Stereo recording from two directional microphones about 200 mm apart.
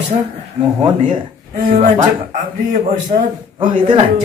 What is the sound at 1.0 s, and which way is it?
A man's voice, 40° right (ahead or behind).